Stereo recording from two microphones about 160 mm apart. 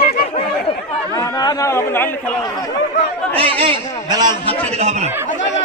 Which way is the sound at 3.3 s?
35° right (ahead or behind).